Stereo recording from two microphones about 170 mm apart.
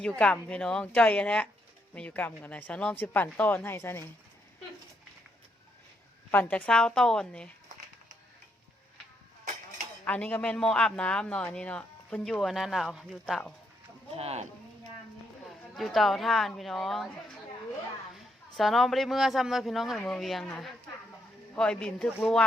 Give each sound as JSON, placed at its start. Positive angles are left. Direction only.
{"t": 0.2, "sound": "a woman's voice", "side_deg": 5}
{"t": 6.3, "sound": "a man's voice", "side_deg": 10}
{"t": 10.0, "sound": "a man's voice", "side_deg": 10}
{"t": 14.2, "sound": "speech", "side_deg": -35}
{"t": 15.4, "sound": "speech", "side_deg": 0}
{"t": 18.1, "sound": "a man's voice", "side_deg": 0}